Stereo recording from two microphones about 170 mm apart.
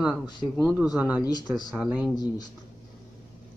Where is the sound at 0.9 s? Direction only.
10° right (ahead or behind).